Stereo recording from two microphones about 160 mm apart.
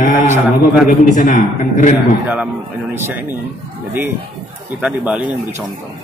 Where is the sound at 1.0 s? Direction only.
50° left (ahead or behind).